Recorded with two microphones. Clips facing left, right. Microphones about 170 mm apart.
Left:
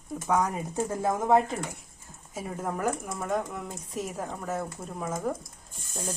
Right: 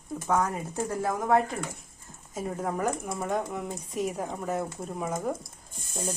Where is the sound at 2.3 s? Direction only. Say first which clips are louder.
Right 2 dB; 5° left (ahead or behind).